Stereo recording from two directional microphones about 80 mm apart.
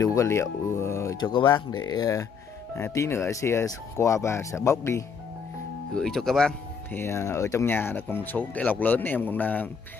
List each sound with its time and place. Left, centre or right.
0.0 s speech: left
1.1 s speech: left
2.7 s speech: left
5.9 s speech: centre
6.9 s speech: left